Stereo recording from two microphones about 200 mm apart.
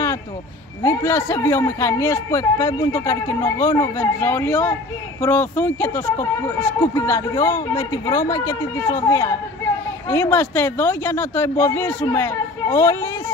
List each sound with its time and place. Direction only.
0.8 s speech: 10° left (ahead or behind)